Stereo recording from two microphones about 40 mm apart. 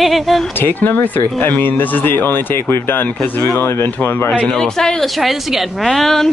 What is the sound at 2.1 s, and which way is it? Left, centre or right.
Speech, left.